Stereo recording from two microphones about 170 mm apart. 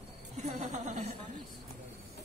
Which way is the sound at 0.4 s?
40° right (ahead or behind).